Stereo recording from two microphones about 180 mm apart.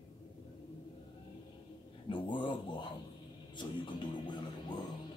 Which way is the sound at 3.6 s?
25° left (ahead or behind).